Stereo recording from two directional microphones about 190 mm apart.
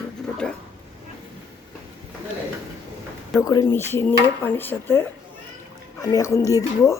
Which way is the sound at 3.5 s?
15° left (ahead or behind).